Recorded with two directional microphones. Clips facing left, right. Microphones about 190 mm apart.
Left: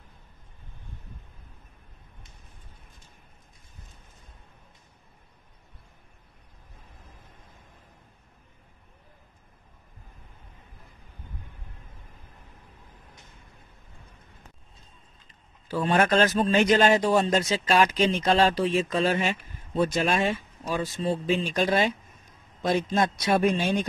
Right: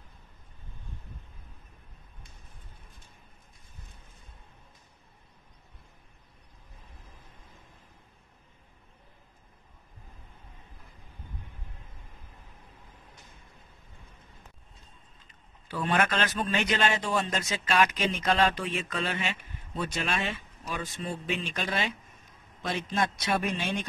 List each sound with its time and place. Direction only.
15.7 s speech: 35° left (ahead or behind)